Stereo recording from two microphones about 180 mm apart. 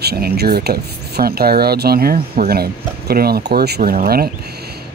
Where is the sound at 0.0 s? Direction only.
60° right (ahead or behind).